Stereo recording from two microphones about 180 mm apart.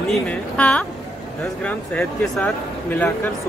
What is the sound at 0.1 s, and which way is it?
A woman's voice, 5° left (ahead or behind).